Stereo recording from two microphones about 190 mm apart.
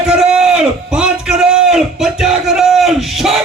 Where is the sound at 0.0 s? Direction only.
5° right (ahead or behind).